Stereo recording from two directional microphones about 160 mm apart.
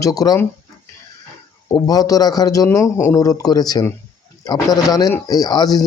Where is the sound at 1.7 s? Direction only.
25° left (ahead or behind).